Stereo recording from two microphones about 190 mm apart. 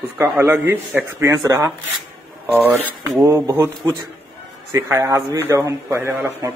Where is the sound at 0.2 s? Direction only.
10° right (ahead or behind).